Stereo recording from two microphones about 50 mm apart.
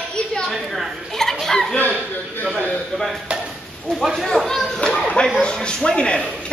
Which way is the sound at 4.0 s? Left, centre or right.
Centre.